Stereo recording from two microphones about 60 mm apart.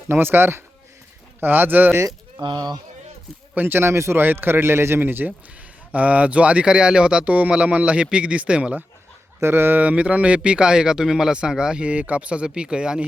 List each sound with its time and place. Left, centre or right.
0.1 s a man's voice: right
3.5 s speech: right
4.2 s a man's voice: right
5.9 s speech: right
9.4 s speech: right; by 13.1 s centre